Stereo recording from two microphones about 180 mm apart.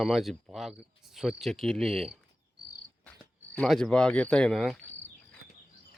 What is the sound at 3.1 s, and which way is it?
Cricket, 5° left (ahead or behind).